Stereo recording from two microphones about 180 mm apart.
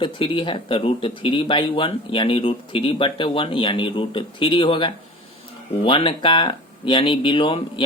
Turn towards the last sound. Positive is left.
turn(degrees=30)  # may be behind; listen again after turning